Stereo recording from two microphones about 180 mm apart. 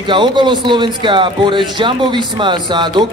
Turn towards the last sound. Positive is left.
turn(degrees=-25)  # may be behind; listen again after turning